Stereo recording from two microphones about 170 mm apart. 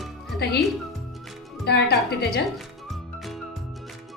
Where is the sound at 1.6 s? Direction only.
75° left (ahead or behind).